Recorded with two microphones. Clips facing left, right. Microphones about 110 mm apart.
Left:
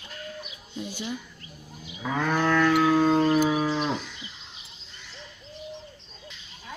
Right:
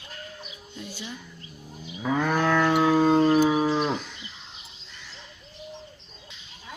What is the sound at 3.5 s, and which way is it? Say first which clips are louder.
Cattle: right 2 dB; 20° right (ahead or behind).